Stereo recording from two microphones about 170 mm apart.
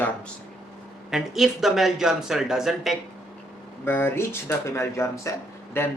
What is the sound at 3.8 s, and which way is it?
Speech, 15° left (ahead or behind).